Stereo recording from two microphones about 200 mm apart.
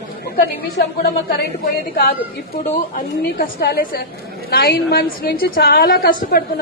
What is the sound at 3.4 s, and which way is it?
A woman's voice, 50° left (ahead or behind).